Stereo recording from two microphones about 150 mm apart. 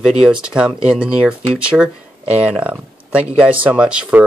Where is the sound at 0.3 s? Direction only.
5° right (ahead or behind).